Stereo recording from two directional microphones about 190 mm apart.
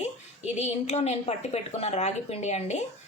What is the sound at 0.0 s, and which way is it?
A woman's voice, 35° left (ahead or behind).